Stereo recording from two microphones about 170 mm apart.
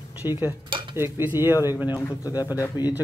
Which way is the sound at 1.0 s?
15° right (ahead or behind).